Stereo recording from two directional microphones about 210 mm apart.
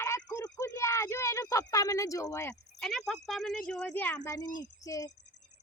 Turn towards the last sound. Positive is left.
turn(degrees=15)  # may be behind; listen again after turning